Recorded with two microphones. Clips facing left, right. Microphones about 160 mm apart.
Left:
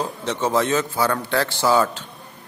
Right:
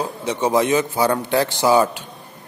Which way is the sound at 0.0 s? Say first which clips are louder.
Right 2 dB; 10° right (ahead or behind).